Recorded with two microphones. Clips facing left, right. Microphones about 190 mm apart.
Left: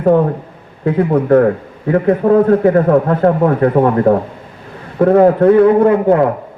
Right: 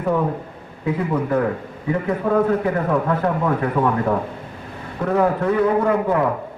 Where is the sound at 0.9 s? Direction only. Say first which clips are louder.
Left 9 dB; 55° left (ahead or behind).